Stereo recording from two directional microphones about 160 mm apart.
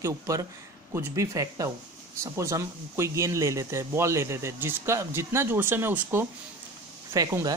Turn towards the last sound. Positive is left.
turn(degrees=-20)  # may be behind; listen again after turning